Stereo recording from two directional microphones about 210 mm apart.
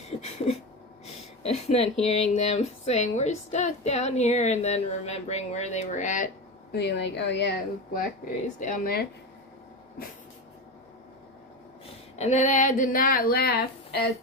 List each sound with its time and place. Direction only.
0.2 s a sound: 30° left (ahead or behind)
1.0 s speech: 30° left (ahead or behind)
6.7 s a woman's voice: 55° left (ahead or behind)
8.5 s speech: 40° left (ahead or behind)
12.1 s speech: 30° left (ahead or behind); by 14.1 s 50° left (ahead or behind)